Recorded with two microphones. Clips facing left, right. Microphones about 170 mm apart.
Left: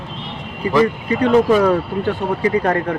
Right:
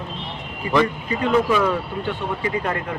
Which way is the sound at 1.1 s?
35° left (ahead or behind).